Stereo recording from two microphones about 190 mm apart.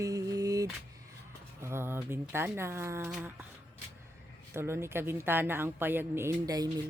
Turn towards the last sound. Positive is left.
turn(degrees=-15)  # may be behind; listen again after turning